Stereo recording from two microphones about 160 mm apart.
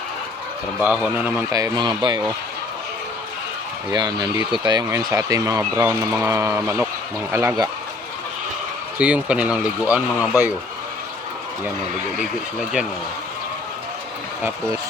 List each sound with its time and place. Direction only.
0.8 s speech: 10° right (ahead or behind)
1.5 s speech: 25° right (ahead or behind)
3.9 s speech: 25° right (ahead or behind)
9.0 s speech: 5° right (ahead or behind)
12.2 s speech: 5° right (ahead or behind)